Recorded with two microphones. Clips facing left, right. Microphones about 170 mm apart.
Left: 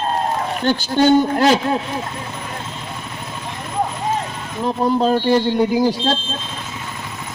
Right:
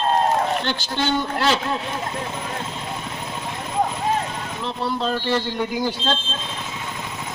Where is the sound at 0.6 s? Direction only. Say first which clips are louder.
Left 9 dB; 45° left (ahead or behind).